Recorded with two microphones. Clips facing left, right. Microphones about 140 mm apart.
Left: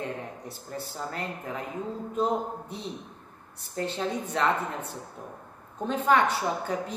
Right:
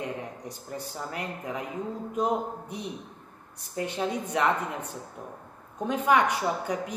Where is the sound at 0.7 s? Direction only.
15° right (ahead or behind).